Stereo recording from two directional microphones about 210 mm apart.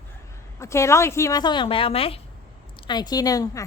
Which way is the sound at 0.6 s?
15° left (ahead or behind).